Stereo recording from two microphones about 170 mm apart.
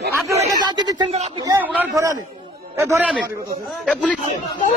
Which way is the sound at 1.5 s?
10° right (ahead or behind).